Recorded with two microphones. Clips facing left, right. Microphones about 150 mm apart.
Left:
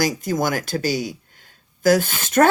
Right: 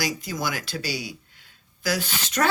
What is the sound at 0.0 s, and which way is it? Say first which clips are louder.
Speech: left 7 dB; 50° left (ahead or behind).